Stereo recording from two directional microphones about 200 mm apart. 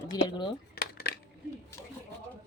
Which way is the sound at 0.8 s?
55° left (ahead or behind).